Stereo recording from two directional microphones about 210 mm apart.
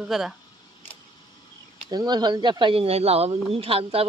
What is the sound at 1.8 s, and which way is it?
Speech, 20° right (ahead or behind).